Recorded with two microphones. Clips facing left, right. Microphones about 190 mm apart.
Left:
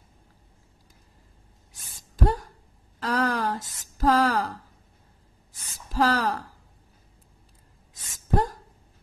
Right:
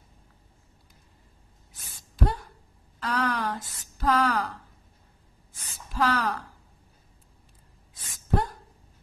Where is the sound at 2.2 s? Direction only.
40° left (ahead or behind).